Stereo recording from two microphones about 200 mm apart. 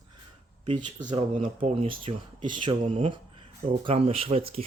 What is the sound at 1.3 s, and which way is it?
Speech, 40° right (ahead or behind).